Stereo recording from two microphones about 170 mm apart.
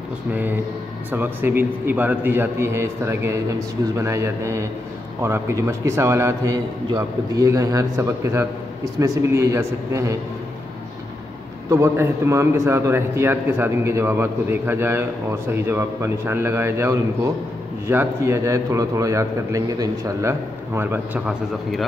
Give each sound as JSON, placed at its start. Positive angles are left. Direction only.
{"t": 0.3, "sound": "a man's voice", "side_deg": -10}
{"t": 11.7, "sound": "a man's voice", "side_deg": -15}